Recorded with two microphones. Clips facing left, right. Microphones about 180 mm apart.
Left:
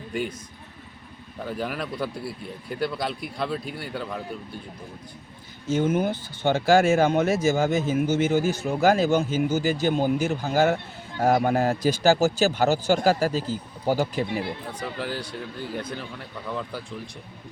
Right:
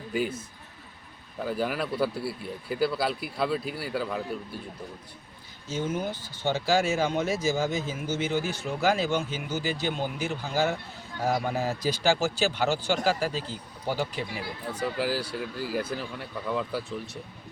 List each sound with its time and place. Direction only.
0.1 s speech: 5° right (ahead or behind)
5.7 s speech: 55° left (ahead or behind)
14.7 s speech: 5° right (ahead or behind)